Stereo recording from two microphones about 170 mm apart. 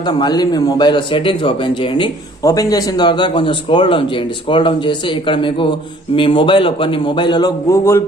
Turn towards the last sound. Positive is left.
turn(degrees=15)  # may be behind; listen again after turning